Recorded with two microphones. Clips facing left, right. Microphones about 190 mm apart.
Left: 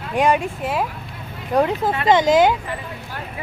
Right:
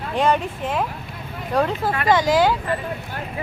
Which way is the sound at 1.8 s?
20° left (ahead or behind).